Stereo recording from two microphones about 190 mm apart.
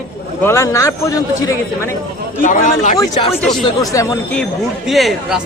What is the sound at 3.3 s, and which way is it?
Speech, centre (ahead or behind).